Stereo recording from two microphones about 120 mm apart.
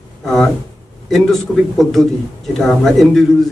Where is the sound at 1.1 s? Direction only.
Centre (ahead or behind).